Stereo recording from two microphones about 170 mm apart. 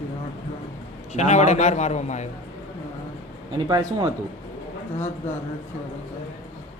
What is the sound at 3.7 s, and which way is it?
Speech, 25° right (ahead or behind).